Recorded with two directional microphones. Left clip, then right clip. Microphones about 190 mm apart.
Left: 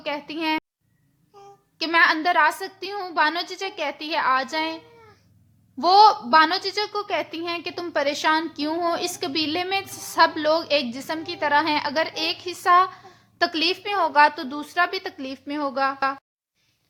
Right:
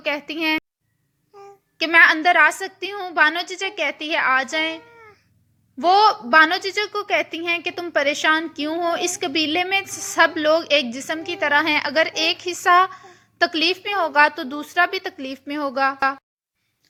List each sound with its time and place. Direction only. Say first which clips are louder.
0.0 s a woman's voice: right 4 dB; 20° right (ahead or behind)
1.8 s a woman's voice: right 5 dB; 20° right (ahead or behind)
5.8 s a woman's voice: left 1 dB; 10° right (ahead or behind)